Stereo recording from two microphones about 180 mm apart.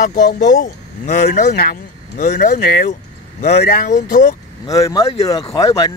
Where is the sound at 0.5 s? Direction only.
45° left (ahead or behind).